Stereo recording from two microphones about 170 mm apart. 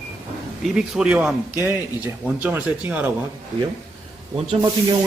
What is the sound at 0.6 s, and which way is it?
A man's voice, centre (ahead or behind).